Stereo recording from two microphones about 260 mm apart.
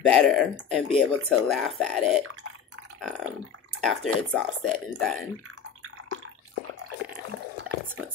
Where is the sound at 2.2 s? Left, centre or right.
Right.